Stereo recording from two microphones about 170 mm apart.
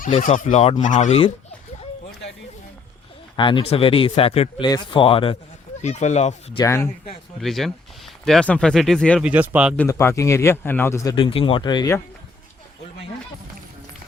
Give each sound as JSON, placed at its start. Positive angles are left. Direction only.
{"t": 0.2, "sound": "speech", "side_deg": 50}
{"t": 3.3, "sound": "speech", "side_deg": 30}
{"t": 5.8, "sound": "speech", "side_deg": 45}
{"t": 6.6, "sound": "a man's voice", "side_deg": 15}
{"t": 7.4, "sound": "speech", "side_deg": 0}
{"t": 9.2, "sound": "speech", "side_deg": -10}
{"t": 9.7, "sound": "a man's voice", "side_deg": 15}
{"t": 11.1, "sound": "speech", "side_deg": 30}